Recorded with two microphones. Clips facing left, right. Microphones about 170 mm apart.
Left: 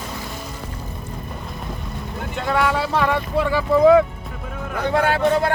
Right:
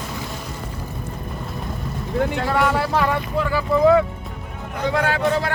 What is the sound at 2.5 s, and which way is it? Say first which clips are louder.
Speech: left 5 dB; 5° right (ahead or behind).